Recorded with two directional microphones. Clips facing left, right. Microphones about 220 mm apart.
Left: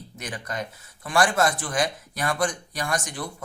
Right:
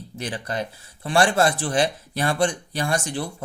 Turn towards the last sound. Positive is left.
turn(degrees=-30)  # may be behind; listen again after turning